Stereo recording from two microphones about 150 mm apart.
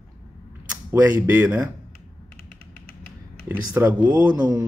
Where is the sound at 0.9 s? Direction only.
10° right (ahead or behind).